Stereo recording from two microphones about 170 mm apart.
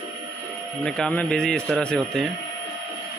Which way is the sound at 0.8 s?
5° left (ahead or behind).